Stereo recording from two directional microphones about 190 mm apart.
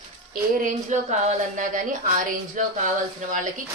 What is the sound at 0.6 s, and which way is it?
A woman's voice, 40° right (ahead or behind).